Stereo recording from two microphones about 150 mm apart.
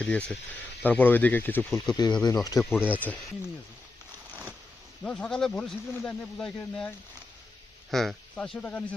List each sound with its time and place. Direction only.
0.0 s speech: 10° left (ahead or behind)
1.7 s speech: 25° left (ahead or behind)
2.6 s speech: 5° right (ahead or behind)
5.0 s speech: 5° left (ahead or behind)